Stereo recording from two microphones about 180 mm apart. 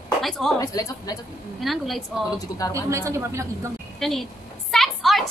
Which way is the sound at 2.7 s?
15° right (ahead or behind).